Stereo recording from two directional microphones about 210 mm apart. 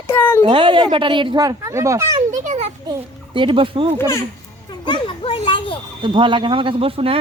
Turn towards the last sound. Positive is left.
turn(degrees=-25)  # may be behind; listen again after turning